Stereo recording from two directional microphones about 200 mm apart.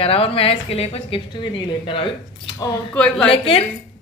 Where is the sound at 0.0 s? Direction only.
30° left (ahead or behind).